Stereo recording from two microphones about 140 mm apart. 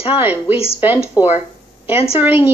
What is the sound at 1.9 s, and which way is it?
Speech, 45° left (ahead or behind).